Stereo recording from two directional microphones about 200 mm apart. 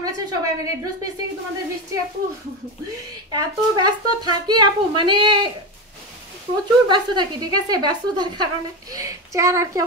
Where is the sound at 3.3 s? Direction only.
20° right (ahead or behind).